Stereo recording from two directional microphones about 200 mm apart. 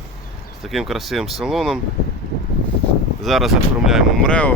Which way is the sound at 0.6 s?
Centre (ahead or behind).